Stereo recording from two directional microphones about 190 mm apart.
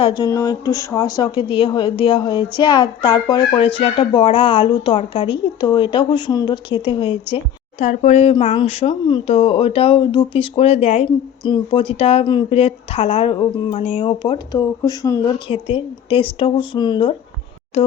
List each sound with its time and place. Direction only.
0.2 s a woman's voice: 15° left (ahead or behind)
7.3 s a woman's voice: 40° left (ahead or behind)
11.4 s a woman's voice: 25° left (ahead or behind)
15.4 s a woman's voice: 30° left (ahead or behind)
17.8 s a sound: 35° left (ahead or behind)